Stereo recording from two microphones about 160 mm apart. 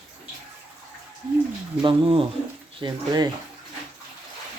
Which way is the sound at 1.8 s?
30° right (ahead or behind).